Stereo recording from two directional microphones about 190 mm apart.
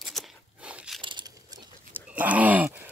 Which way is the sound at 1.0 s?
20° right (ahead or behind).